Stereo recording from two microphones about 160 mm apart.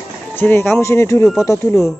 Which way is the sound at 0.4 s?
15° left (ahead or behind).